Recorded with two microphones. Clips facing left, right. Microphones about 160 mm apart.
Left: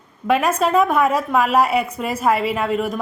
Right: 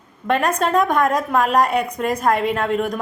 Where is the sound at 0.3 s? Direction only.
5° left (ahead or behind).